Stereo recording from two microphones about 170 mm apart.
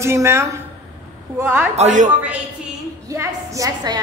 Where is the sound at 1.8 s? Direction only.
45° right (ahead or behind).